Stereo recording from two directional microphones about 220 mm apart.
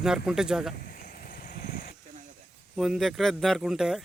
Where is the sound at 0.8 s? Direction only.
40° left (ahead or behind).